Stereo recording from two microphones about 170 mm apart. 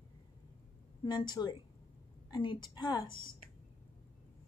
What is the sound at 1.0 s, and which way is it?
A woman's voice, 25° left (ahead or behind).